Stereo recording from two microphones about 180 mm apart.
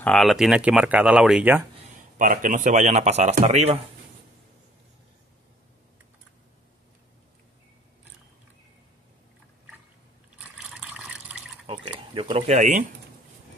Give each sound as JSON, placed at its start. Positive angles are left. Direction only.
{"t": 0.0, "sound": "speech", "side_deg": 0}
{"t": 2.1, "sound": "speech", "side_deg": -45}
{"t": 10.8, "sound": "water", "side_deg": -5}
{"t": 11.6, "sound": "a sound", "side_deg": -30}